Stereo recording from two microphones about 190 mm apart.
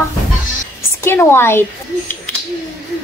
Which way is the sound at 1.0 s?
10° left (ahead or behind).